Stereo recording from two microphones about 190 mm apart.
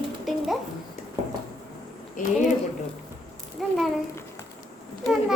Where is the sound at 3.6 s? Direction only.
Centre (ahead or behind).